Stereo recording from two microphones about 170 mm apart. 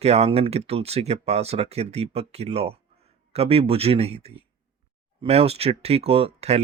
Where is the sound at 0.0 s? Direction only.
40° right (ahead or behind).